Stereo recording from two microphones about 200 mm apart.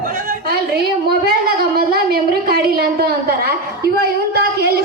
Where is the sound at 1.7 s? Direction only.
50° right (ahead or behind).